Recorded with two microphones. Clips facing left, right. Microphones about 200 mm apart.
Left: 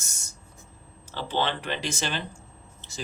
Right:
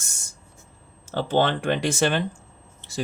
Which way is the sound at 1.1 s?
50° right (ahead or behind).